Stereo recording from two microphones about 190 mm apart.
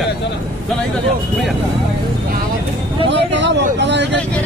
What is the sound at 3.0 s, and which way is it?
Vehicle, 70° right (ahead or behind).